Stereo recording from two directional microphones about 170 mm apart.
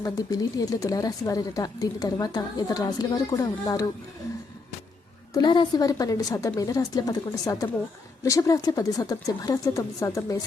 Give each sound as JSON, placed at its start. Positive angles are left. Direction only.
{"t": 0.0, "sound": "speech", "side_deg": 20}
{"t": 5.3, "sound": "speech", "side_deg": 25}